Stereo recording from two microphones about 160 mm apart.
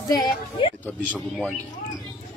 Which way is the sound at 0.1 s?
25° left (ahead or behind).